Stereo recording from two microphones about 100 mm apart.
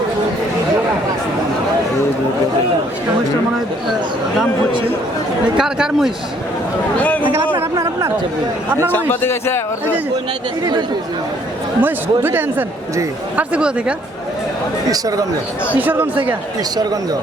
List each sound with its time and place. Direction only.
5.5 s speech: 5° right (ahead or behind)
7.0 s speech: 15° left (ahead or behind)
8.9 s a man's voice: 20° left (ahead or behind)
11.8 s speech: 20° right (ahead or behind)
14.8 s speech: 40° right (ahead or behind)
15.7 s speech: 20° right (ahead or behind)
16.7 s speech: 40° right (ahead or behind)